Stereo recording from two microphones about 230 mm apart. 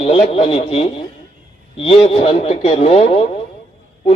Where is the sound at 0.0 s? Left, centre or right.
Left.